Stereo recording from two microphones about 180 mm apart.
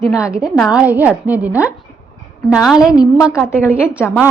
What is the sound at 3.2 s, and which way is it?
Speech, 15° left (ahead or behind).